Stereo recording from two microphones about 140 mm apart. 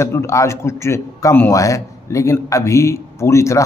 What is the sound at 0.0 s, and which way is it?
A man's voice, 20° left (ahead or behind).